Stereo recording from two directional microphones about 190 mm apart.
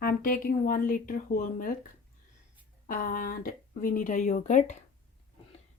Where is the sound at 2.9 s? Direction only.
45° left (ahead or behind).